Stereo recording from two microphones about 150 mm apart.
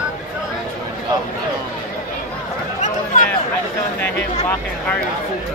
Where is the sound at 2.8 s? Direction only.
55° left (ahead or behind).